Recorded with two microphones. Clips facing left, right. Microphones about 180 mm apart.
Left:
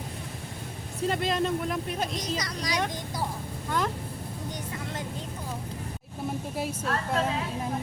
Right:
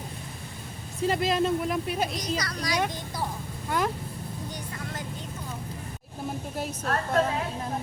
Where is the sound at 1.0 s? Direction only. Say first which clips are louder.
Right 2 dB; 5° right (ahead or behind).